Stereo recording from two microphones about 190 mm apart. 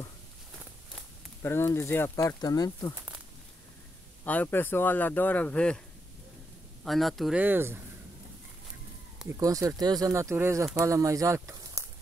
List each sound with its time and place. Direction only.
1.4 s speech: 10° left (ahead or behind)
4.2 s speech: 10° left (ahead or behind)
6.8 s speech: centre (ahead or behind)
9.4 s speech: 15° right (ahead or behind)